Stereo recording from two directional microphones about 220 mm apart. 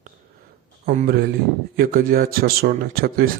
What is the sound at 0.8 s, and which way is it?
A man's voice, 40° right (ahead or behind).